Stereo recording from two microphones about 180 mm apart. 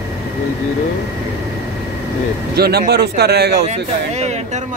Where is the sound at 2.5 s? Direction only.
60° right (ahead or behind).